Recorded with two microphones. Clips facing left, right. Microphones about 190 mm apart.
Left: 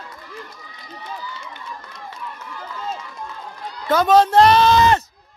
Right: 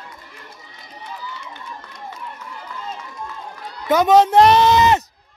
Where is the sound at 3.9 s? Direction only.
20° right (ahead or behind).